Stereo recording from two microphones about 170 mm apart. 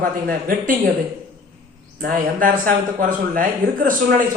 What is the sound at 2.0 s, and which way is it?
Speech, 55° right (ahead or behind).